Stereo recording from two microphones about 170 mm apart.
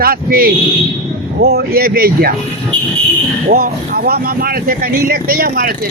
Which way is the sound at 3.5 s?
60° right (ahead or behind).